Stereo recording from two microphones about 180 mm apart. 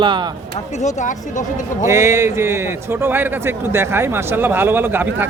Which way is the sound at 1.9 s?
15° right (ahead or behind).